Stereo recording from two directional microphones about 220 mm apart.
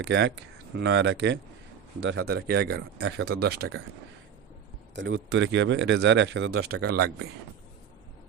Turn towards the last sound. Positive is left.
turn(degrees=-50)  # may be behind; listen again after turning